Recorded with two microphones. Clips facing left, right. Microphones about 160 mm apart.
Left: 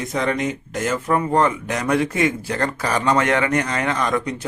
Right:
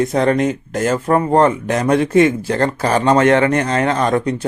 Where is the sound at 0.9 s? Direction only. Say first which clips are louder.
Right 5 dB; 35° right (ahead or behind).